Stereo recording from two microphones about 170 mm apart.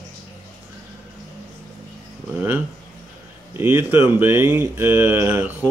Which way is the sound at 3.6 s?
10° right (ahead or behind).